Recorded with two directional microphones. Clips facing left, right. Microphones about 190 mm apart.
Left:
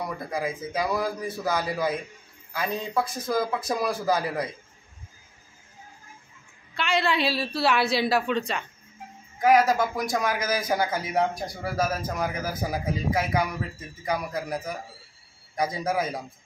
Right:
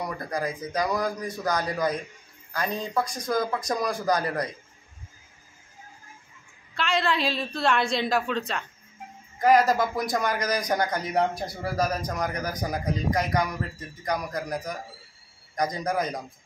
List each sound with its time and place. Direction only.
0.0 s speech: 5° left (ahead or behind)
6.7 s speech: centre (ahead or behind)